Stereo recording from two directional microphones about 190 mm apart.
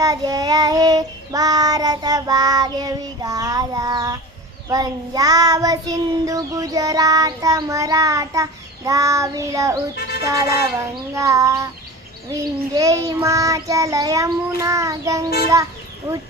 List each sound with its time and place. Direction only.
0.0 s child singing: 20° right (ahead or behind)